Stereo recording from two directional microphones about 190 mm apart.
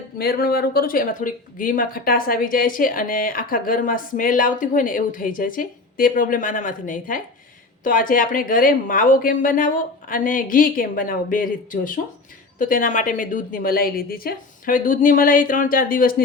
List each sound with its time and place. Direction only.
0.2 s speech: 55° left (ahead or behind)